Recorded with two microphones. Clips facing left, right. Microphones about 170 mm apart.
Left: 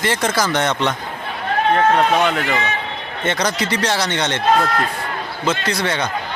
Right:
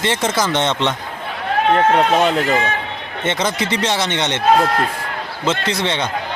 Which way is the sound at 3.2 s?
20° right (ahead or behind).